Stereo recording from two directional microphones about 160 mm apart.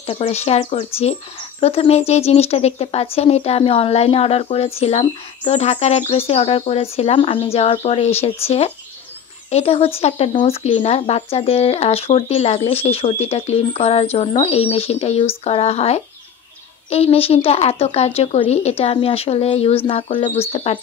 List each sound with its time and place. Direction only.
0.0 s speech: 35° left (ahead or behind)